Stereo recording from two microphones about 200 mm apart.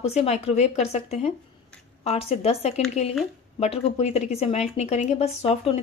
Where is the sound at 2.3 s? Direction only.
30° left (ahead or behind).